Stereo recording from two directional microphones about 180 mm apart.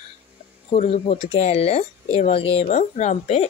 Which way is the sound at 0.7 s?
35° left (ahead or behind).